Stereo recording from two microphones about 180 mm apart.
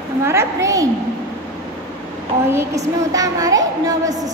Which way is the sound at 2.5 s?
20° right (ahead or behind).